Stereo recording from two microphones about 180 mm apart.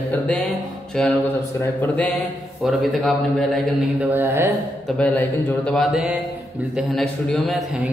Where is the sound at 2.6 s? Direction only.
Centre (ahead or behind).